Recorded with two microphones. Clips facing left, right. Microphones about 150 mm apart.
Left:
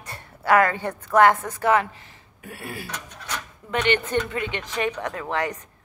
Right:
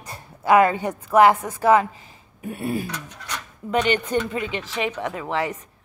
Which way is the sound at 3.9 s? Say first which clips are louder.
Right 1 dB; 10° right (ahead or behind).